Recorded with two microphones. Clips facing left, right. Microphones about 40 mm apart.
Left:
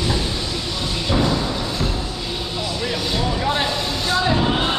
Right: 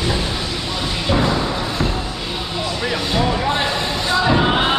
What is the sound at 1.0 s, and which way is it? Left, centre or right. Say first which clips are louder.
Thump: right 2 dB; right.